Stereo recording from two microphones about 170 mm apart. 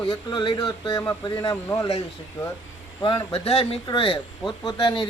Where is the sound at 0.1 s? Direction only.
25° left (ahead or behind).